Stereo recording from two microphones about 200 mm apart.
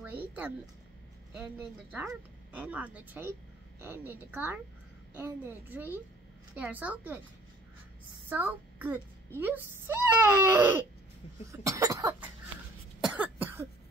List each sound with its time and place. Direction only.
0.0 s a sound: 10° right (ahead or behind)
1.3 s a child's voice: 5° right (ahead or behind)
8.3 s a child's voice: 10° right (ahead or behind)
13.0 s cough: 5° right (ahead or behind)